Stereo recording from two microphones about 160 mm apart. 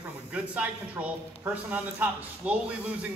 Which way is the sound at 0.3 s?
10° right (ahead or behind).